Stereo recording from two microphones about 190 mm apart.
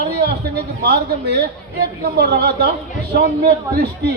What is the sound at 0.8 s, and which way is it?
A man's voice, 55° right (ahead or behind).